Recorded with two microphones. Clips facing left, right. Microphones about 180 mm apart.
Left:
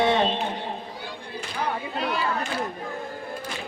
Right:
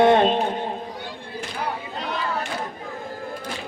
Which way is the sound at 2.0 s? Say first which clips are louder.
Left 2 dB; 10° left (ahead or behind).